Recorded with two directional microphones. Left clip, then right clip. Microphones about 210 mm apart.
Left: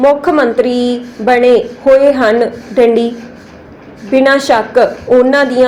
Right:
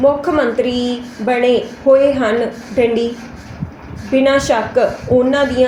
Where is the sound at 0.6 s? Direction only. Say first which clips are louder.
Left 5 dB; 15° left (ahead or behind).